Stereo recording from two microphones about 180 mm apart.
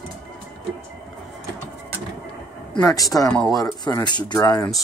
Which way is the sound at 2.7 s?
20° left (ahead or behind).